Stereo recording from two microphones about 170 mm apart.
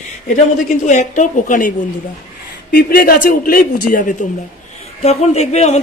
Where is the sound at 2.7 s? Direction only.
60° left (ahead or behind).